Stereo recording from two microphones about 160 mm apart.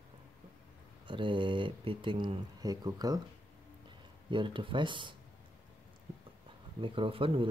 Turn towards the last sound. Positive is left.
turn(degrees=-35)  # may be behind; listen again after turning